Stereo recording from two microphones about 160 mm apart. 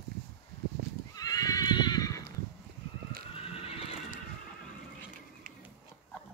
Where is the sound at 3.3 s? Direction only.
35° left (ahead or behind).